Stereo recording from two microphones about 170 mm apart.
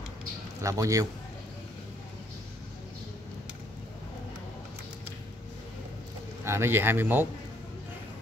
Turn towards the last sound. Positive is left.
turn(degrees=-10)  # may be behind; listen again after turning